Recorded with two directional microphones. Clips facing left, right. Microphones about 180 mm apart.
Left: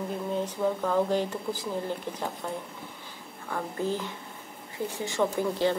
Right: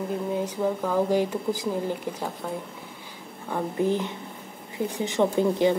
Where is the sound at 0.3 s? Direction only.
10° right (ahead or behind).